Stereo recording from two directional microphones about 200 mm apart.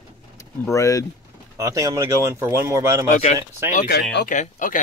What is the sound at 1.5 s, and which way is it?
Speech, 15° right (ahead or behind).